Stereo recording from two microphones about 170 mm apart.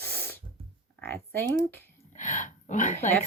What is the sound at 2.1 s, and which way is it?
Speech, 50° left (ahead or behind).